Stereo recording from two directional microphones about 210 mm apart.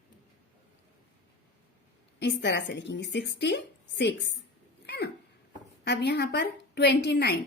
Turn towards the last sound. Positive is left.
turn(degrees=50)  # may be behind; listen again after turning